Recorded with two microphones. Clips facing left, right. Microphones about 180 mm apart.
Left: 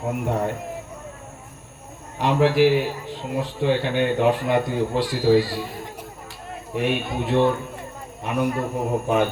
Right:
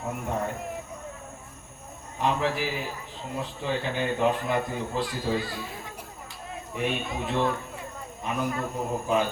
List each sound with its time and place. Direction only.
0.1 s a man's voice: 70° left (ahead or behind)
2.1 s a man's voice: 75° left (ahead or behind)
6.7 s a man's voice: 65° left (ahead or behind)